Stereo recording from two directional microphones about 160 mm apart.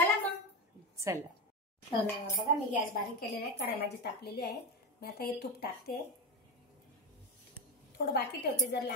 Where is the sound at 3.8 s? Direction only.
90° left.